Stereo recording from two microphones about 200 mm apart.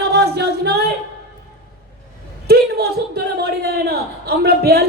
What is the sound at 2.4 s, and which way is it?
A man's voice, 50° right (ahead or behind).